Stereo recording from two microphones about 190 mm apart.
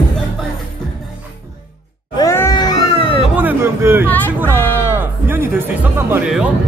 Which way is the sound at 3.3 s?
10° right (ahead or behind).